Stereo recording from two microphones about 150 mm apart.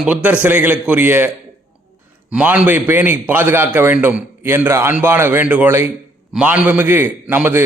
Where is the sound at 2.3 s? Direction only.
10° right (ahead or behind).